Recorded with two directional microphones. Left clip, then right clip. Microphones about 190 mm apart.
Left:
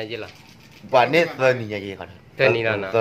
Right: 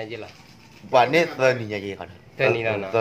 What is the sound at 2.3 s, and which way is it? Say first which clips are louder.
Speech: left 3 dB; 15° left (ahead or behind).